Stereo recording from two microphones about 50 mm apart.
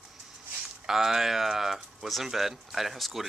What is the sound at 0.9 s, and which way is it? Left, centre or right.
Speech, centre.